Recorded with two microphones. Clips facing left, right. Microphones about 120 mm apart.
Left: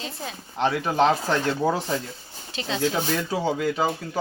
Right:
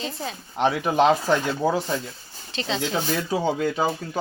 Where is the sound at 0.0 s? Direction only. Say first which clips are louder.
Right 3 dB; centre (ahead or behind).